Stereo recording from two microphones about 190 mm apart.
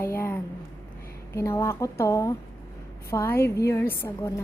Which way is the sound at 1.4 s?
15° left (ahead or behind).